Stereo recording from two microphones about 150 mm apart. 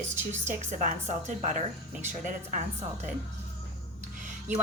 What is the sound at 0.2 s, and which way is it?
A woman's voice, 50° right (ahead or behind).